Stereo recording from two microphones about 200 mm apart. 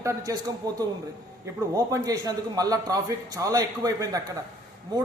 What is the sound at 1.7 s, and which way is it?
A man's voice, 15° right (ahead or behind).